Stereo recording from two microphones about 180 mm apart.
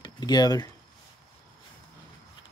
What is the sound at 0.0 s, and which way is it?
Speech, 25° left (ahead or behind).